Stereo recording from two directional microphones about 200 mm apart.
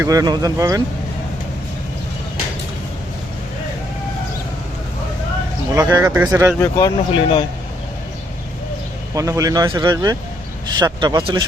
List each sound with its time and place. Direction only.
0.0 s speech: 15° right (ahead or behind)
5.7 s speech: 15° right (ahead or behind)
6.6 s speech: 15° left (ahead or behind)
9.1 s speech: 15° right (ahead or behind)